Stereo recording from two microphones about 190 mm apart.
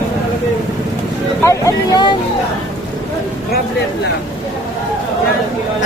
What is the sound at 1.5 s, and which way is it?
Speech, 20° left (ahead or behind).